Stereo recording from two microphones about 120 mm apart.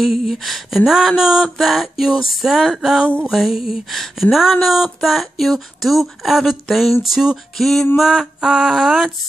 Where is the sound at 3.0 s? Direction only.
10° left (ahead or behind).